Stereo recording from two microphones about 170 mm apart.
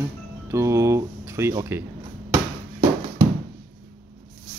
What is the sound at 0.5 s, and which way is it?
Speech, 15° right (ahead or behind).